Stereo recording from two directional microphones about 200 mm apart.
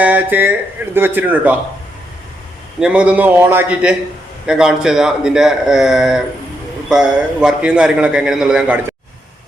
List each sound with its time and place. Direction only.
0.0 s speech: 10° right (ahead or behind)
2.8 s a man's voice: 5° right (ahead or behind)